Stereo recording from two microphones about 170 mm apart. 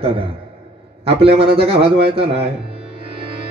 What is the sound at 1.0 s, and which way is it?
Speech, 35° right (ahead or behind).